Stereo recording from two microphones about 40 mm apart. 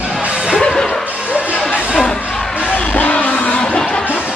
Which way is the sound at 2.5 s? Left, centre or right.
Left.